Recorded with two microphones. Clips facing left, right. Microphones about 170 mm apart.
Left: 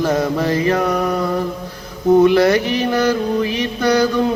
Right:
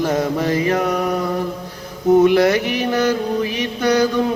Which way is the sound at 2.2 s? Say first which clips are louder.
Left 1 dB; 15° right (ahead or behind).